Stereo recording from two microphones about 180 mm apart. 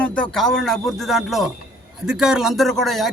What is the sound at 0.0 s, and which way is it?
A man's voice, 5° left (ahead or behind).